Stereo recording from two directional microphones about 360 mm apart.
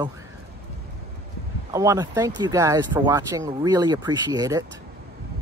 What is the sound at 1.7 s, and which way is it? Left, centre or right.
Speech, centre.